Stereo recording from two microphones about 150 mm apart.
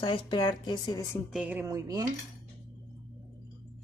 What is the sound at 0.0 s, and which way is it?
A woman's voice, 35° left (ahead or behind).